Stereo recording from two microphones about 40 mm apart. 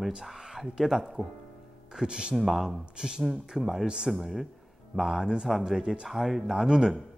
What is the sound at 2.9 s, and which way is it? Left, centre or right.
Speech, centre.